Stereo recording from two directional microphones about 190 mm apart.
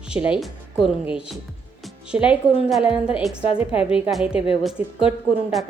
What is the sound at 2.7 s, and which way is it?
Speech, centre (ahead or behind).